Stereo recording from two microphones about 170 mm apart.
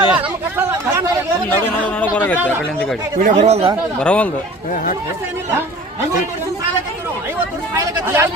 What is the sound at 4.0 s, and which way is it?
Speech, 5° left (ahead or behind).